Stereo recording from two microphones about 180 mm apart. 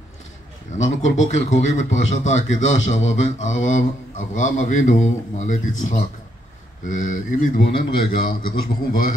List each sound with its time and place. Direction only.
0.7 s a man's voice: 40° left (ahead or behind)